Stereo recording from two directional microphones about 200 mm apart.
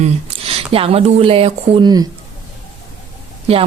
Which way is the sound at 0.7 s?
30° right (ahead or behind).